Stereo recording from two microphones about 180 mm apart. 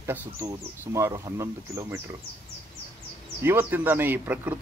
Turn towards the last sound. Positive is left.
turn(degrees=-10)  # may be behind; listen again after turning